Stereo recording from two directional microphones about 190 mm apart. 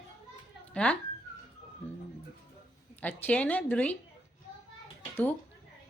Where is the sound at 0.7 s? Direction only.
5° left (ahead or behind).